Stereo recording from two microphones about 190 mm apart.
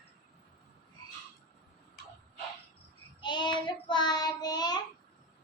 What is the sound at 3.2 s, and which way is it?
Child singing, 25° left (ahead or behind).